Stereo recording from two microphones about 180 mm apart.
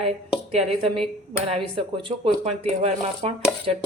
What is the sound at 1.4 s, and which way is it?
Speech, 30° right (ahead or behind).